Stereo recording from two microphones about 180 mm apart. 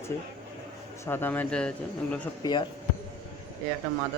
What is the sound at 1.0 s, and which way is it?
Speech, 10° left (ahead or behind).